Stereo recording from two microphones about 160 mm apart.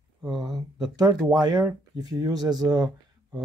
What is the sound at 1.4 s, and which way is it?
Speech, 25° right (ahead or behind).